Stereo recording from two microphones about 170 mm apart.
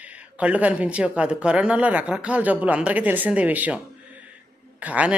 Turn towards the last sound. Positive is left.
turn(degrees=-10)  # may be behind; listen again after turning